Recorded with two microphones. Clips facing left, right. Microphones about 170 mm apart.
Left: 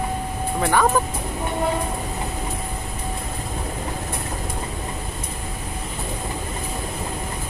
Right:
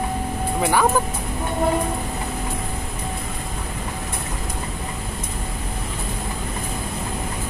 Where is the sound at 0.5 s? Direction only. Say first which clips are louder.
Even; 10° right (ahead or behind).